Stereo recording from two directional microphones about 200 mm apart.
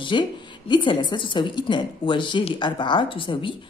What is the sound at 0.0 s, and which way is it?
A woman's voice, 25° left (ahead or behind).